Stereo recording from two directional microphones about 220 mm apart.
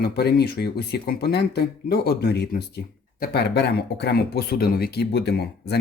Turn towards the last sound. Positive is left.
turn(degrees=45)  # may be behind; listen again after turning